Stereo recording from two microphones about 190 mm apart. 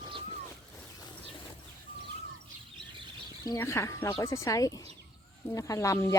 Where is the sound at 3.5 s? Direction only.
15° left (ahead or behind).